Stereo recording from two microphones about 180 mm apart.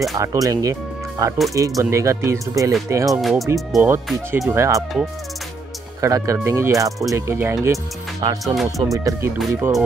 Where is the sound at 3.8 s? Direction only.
10° right (ahead or behind).